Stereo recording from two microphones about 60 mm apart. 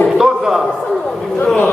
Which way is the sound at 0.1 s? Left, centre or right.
Centre.